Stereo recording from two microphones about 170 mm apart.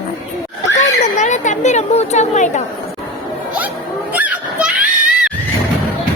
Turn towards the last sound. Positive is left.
turn(degrees=-5)  # may be behind; listen again after turning